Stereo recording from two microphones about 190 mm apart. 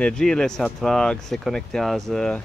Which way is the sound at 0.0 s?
5° left (ahead or behind).